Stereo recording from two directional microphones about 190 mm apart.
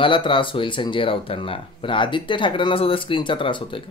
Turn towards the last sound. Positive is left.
turn(degrees=25)  # may be behind; listen again after turning